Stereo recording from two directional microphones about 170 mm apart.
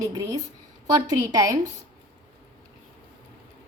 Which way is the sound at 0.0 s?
20° right (ahead or behind).